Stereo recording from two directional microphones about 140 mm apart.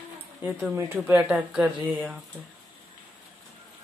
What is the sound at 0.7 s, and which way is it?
Speech, 15° right (ahead or behind).